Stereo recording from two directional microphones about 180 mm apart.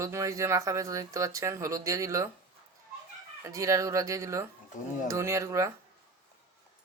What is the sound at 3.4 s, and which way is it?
Speech, 15° right (ahead or behind).